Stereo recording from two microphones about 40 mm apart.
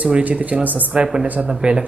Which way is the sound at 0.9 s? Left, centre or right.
Right.